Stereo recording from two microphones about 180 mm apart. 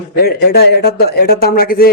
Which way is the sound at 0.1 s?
60° left (ahead or behind).